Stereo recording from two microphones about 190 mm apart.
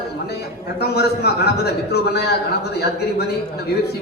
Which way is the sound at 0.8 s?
60° left (ahead or behind).